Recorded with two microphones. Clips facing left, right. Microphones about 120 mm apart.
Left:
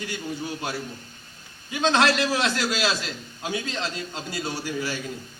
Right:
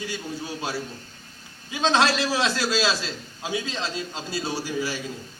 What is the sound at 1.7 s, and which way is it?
Speech, 20° right (ahead or behind).